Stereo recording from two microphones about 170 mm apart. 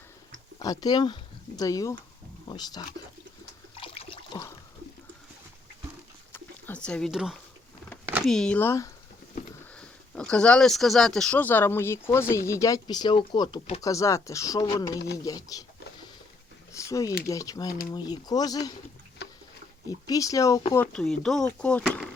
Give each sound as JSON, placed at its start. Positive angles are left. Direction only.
{"t": 0.6, "sound": "speech", "side_deg": 20}
{"t": 3.8, "sound": "toilet flush", "side_deg": 35}
{"t": 6.3, "sound": "a sound", "side_deg": 10}
{"t": 8.3, "sound": "speech", "side_deg": 5}
{"t": 16.7, "sound": "a sound", "side_deg": 20}
{"t": 17.2, "sound": "speech", "side_deg": 20}
{"t": 20.1, "sound": "speech", "side_deg": 20}
{"t": 20.7, "sound": "speech", "side_deg": 5}